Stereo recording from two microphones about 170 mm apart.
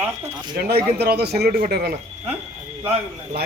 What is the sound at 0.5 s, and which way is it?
Speech, 70° right (ahead or behind).